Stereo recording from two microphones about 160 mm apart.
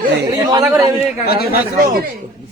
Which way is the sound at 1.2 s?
75° left (ahead or behind).